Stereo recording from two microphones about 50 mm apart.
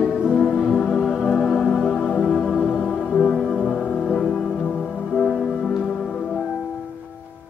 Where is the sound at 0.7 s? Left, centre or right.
Centre.